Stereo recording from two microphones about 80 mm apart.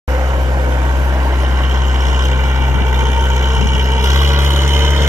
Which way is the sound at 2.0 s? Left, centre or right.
Right.